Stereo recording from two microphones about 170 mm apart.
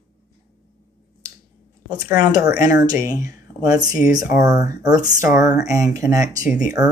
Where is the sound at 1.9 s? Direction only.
20° right (ahead or behind).